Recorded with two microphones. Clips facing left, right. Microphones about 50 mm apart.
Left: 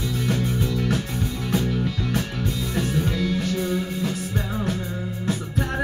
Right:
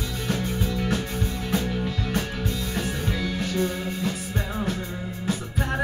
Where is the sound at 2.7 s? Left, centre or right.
Centre.